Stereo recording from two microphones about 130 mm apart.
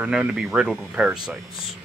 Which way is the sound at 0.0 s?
5° right (ahead or behind).